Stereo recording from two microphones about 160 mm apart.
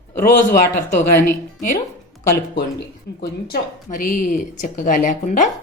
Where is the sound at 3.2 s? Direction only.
65° left (ahead or behind).